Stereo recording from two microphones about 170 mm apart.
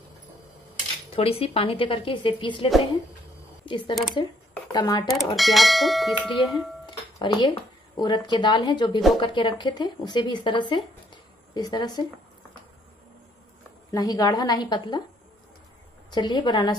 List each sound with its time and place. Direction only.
1.1 s a woman's voice: 35° left (ahead or behind)
5.1 s speech: centre (ahead or behind)
6.9 s speech: 25° left (ahead or behind)
13.9 s speech: 20° left (ahead or behind)
16.1 s speech: 25° left (ahead or behind)